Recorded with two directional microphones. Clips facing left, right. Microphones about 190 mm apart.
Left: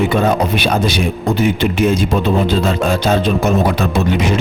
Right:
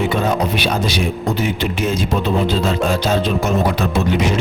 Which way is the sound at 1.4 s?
55° left (ahead or behind).